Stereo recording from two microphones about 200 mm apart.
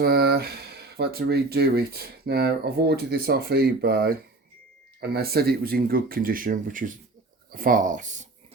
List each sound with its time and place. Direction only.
0.0 s speech: 50° right (ahead or behind)